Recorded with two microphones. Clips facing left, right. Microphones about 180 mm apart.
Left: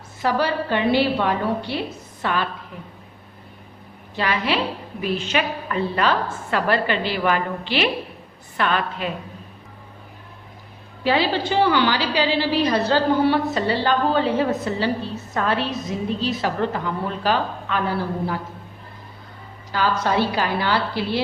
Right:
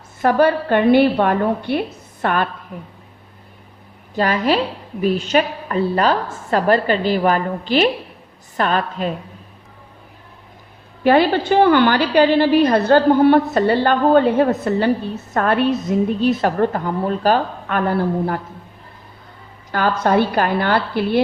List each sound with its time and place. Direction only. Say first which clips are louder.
0.2 s a woman's voice: right 6 dB; 55° right (ahead or behind)
4.1 s a woman's voice: right 6 dB; 45° right (ahead or behind)
11.0 s a woman's voice: right 6 dB; 55° right (ahead or behind)
19.7 s a woman's voice: right 4 dB; 55° right (ahead or behind)